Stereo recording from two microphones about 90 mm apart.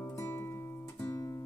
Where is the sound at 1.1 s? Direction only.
30° left (ahead or behind).